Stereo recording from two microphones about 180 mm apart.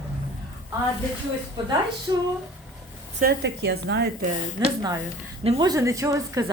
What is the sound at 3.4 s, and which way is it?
Speech, 70° right (ahead or behind).